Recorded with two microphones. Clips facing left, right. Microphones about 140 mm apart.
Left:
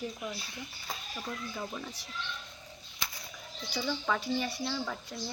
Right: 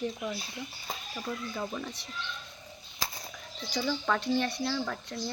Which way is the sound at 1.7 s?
Centre (ahead or behind).